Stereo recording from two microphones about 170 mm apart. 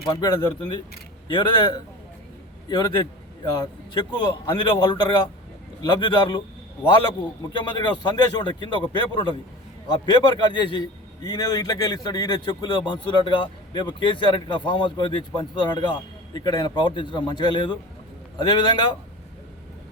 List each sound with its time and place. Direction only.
0.1 s a man's voice: 25° left (ahead or behind)
7.5 s a man's voice: 25° left (ahead or behind)